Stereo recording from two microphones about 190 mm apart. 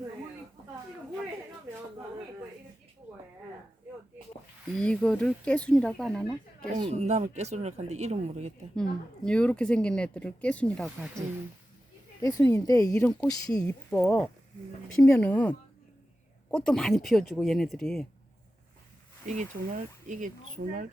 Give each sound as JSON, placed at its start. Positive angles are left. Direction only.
{"t": 4.8, "sound": "speech", "side_deg": 5}
{"t": 6.7, "sound": "speech", "side_deg": -30}
{"t": 8.7, "sound": "speech", "side_deg": 5}
{"t": 12.2, "sound": "speech", "side_deg": 15}
{"t": 19.2, "sound": "speech", "side_deg": -40}